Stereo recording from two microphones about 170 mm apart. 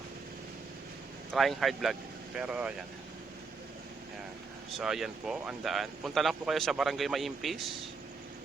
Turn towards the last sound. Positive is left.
turn(degrees=0)  # may be behind; listen again after turning